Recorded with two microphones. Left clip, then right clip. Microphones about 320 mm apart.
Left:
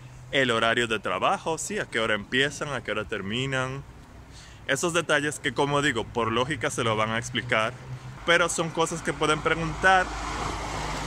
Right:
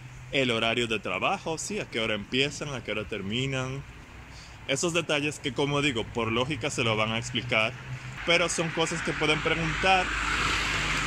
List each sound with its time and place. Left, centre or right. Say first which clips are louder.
0.3 s speech: left 3 dB; centre
10.3 s boat: right 5 dB; left